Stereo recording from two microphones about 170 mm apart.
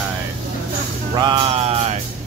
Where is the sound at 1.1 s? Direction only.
25° right (ahead or behind).